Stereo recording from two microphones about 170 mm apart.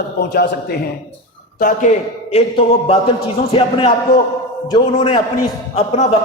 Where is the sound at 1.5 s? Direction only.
50° left (ahead or behind).